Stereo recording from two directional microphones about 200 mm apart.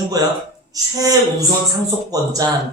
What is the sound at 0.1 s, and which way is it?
A man's voice, 20° right (ahead or behind).